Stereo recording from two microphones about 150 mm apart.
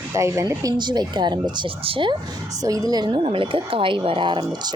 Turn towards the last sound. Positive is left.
turn(degrees=-30)  # may be behind; listen again after turning